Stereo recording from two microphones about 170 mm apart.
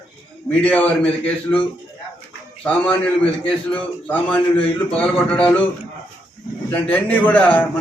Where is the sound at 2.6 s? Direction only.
10° left (ahead or behind).